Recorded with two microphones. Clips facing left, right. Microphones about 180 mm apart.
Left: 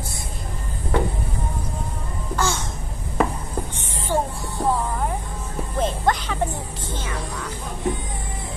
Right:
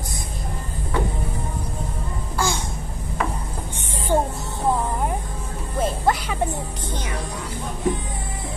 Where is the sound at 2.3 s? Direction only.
10° right (ahead or behind).